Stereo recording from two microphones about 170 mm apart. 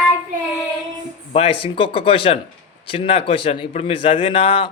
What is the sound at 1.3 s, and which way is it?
A man's voice, 35° left (ahead or behind).